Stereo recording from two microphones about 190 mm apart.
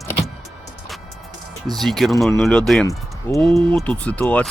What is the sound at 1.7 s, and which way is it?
Speech, centre (ahead or behind).